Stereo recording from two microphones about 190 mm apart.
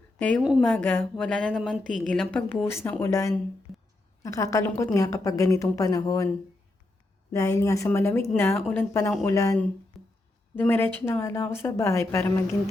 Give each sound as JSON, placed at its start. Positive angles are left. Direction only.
{"t": 0.2, "sound": "speech", "side_deg": 5}
{"t": 3.7, "sound": "a sound", "side_deg": 0}
{"t": 4.2, "sound": "a woman's voice", "side_deg": 15}
{"t": 7.3, "sound": "speech", "side_deg": 15}
{"t": 10.0, "sound": "a sound", "side_deg": 0}
{"t": 10.5, "sound": "speech", "side_deg": 10}